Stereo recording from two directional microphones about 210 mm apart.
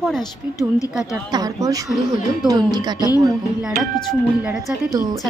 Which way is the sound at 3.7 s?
Centre (ahead or behind).